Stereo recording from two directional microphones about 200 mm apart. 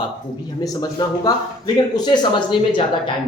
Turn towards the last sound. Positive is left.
turn(degrees=25)  # may be behind; listen again after turning